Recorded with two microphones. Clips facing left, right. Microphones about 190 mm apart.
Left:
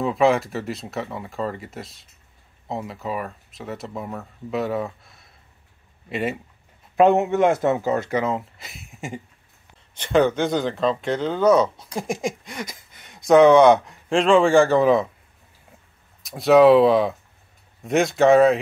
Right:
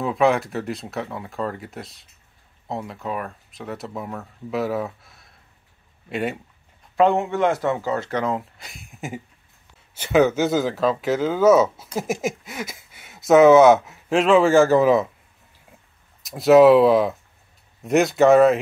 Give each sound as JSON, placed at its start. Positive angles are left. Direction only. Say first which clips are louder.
{"t": 0.0, "sound": "speech", "louder": "left 1 dB", "side_deg": 0}
{"t": 7.0, "sound": "a man's voice", "louder": "left 2 dB", "side_deg": 20}
{"t": 8.2, "sound": "speech", "louder": "even", "side_deg": 0}
{"t": 16.2, "sound": "speech", "louder": "right 2 dB", "side_deg": 0}